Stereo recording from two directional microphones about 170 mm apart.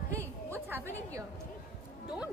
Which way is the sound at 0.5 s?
10° right (ahead or behind).